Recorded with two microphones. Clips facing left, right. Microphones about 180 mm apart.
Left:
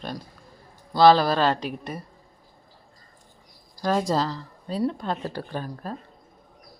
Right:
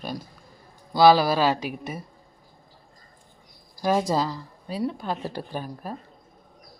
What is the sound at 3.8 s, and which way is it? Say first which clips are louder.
Speech: right 1 dB; 5° right (ahead or behind).